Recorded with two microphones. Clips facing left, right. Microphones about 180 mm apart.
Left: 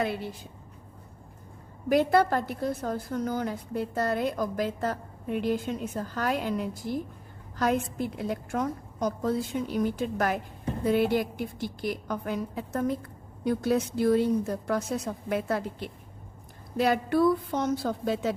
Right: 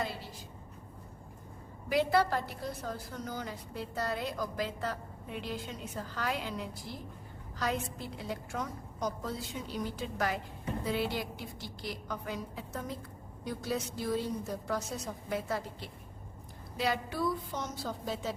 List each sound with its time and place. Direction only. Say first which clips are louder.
0.0 s a woman's voice: left 8 dB; 60° left (ahead or behind)
1.9 s a woman's voice: left 6 dB; 50° left (ahead or behind)